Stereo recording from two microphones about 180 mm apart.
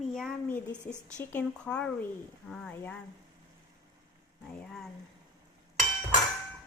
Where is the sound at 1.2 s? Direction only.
5° left (ahead or behind).